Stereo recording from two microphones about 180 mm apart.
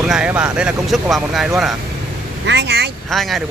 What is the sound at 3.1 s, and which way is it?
Speech, centre (ahead or behind).